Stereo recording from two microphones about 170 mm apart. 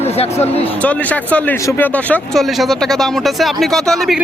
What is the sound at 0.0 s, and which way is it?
Speech, 40° left (ahead or behind).